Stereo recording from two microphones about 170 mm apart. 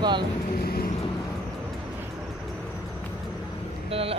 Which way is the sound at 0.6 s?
65° left (ahead or behind).